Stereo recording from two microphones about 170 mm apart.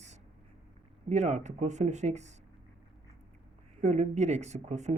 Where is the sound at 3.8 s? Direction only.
45° right (ahead or behind).